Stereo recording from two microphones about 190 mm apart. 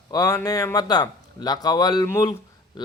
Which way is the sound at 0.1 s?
20° left (ahead or behind).